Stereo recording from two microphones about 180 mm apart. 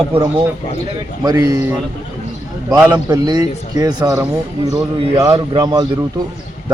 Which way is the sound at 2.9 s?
25° right (ahead or behind).